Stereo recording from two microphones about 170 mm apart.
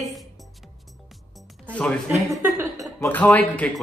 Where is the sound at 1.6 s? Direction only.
5° left (ahead or behind).